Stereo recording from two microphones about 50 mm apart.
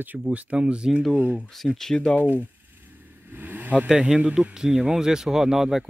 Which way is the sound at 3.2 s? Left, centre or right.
Right.